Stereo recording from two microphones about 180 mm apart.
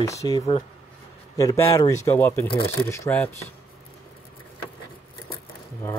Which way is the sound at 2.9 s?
15° left (ahead or behind).